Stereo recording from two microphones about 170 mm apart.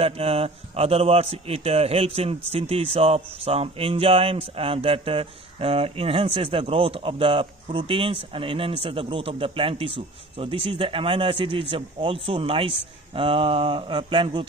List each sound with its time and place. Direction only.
0.0 s a man's voice: 35° right (ahead or behind)